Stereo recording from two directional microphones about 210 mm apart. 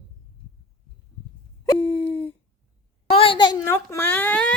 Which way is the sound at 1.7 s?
25° left (ahead or behind).